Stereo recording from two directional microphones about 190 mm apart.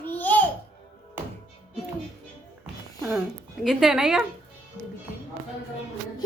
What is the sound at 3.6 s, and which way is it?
Speech, 5° right (ahead or behind).